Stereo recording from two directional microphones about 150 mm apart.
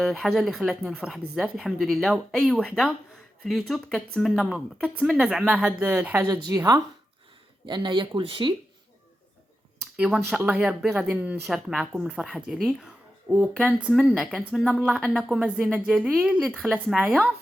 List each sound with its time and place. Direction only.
0.0 s speech: centre (ahead or behind)
6.2 s a woman's voice: 25° right (ahead or behind)
7.7 s speech: 30° right (ahead or behind)
10.3 s speech: 5° right (ahead or behind)